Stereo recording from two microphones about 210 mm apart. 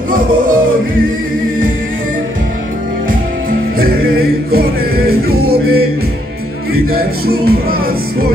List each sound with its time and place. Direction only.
3.8 s music: 45° right (ahead or behind)